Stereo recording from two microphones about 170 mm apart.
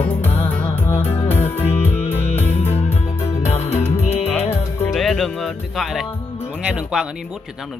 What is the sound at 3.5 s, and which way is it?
Music, 40° left (ahead or behind).